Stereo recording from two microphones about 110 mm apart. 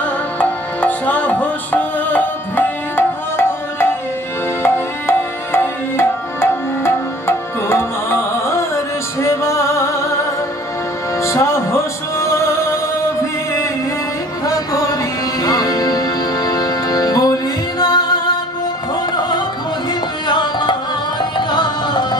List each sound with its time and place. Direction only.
0.4 s music: 15° left (ahead or behind)
11.2 s music: 25° left (ahead or behind)
15.4 s music: 35° left (ahead or behind)
20.2 s tabla: 45° left (ahead or behind)
21.4 s music: 45° left (ahead or behind)